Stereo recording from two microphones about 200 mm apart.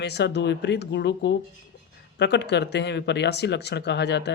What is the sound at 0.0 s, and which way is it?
Speech, 60° left (ahead or behind).